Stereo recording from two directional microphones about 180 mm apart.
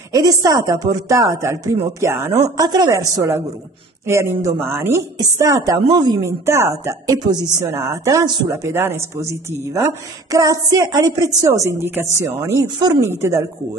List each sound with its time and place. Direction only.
0.1 s speech: 20° right (ahead or behind)